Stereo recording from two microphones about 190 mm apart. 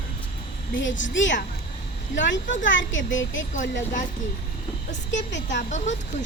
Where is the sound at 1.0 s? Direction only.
75° left (ahead or behind).